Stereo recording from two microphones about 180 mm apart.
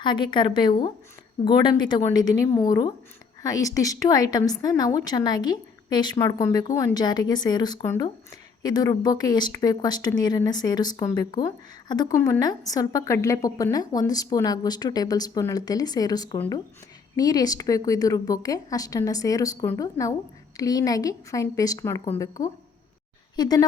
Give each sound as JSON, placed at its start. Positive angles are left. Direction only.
{"t": 0.0, "sound": "speech", "side_deg": 25}